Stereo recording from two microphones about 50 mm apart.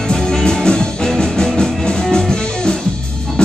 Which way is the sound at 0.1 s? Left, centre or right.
Centre.